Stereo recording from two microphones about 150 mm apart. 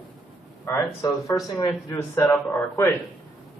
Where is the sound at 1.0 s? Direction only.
15° left (ahead or behind).